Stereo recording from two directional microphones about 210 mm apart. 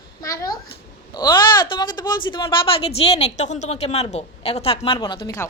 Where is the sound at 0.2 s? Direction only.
15° left (ahead or behind).